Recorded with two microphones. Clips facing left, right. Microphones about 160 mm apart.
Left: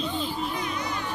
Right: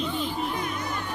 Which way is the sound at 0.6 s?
50° right (ahead or behind).